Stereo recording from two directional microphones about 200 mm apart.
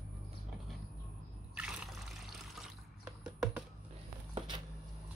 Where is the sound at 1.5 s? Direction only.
5° right (ahead or behind).